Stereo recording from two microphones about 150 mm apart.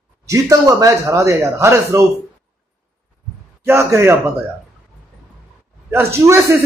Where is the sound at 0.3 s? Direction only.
20° right (ahead or behind).